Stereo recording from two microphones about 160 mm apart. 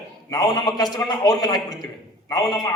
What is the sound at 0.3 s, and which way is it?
A man's voice, 25° left (ahead or behind).